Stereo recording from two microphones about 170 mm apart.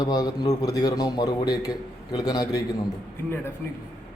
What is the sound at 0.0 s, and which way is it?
A man's voice, 25° left (ahead or behind).